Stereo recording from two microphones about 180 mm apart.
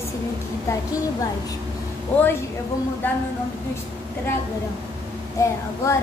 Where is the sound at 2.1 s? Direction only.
10° left (ahead or behind).